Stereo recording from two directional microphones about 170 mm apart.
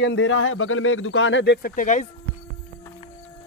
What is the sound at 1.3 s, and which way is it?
Speech, 90° left.